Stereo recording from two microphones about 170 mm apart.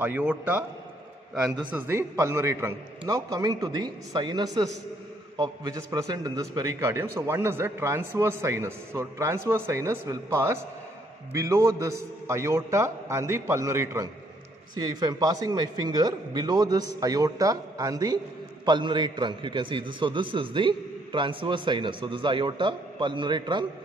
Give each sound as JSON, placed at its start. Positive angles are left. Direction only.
{"t": 0.0, "sound": "speech", "side_deg": -10}
{"t": 1.7, "sound": "a man's voice", "side_deg": -10}